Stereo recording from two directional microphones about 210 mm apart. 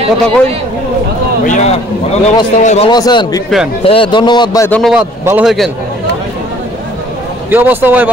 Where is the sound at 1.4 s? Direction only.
35° left (ahead or behind).